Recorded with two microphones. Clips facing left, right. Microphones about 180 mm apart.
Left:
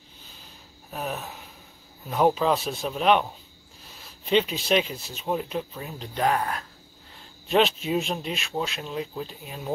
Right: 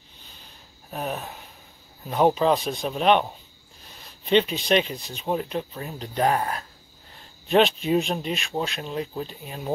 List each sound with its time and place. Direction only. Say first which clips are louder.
0.9 s speech: right 2 dB; 5° right (ahead or behind)
6.3 s speech: right 1 dB; 25° right (ahead or behind)
7.4 s speech: right 2 dB; centre (ahead or behind)